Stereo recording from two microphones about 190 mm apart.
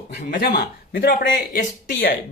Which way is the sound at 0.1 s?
55° left (ahead or behind).